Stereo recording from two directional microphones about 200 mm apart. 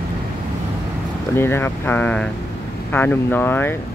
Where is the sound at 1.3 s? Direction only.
10° left (ahead or behind).